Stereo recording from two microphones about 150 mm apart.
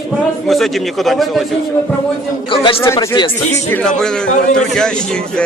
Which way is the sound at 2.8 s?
20° left (ahead or behind).